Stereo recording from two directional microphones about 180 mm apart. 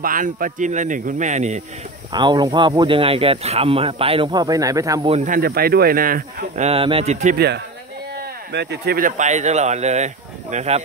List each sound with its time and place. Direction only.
0.0 s speech: 50° right (ahead or behind)
2.1 s speech: 25° right (ahead or behind)
5.0 s speech: 35° right (ahead or behind)
5.3 s speech: 55° right (ahead or behind); by 7.3 s 40° right (ahead or behind)
7.3 s speech: 65° right (ahead or behind); by 10.8 s 40° right (ahead or behind)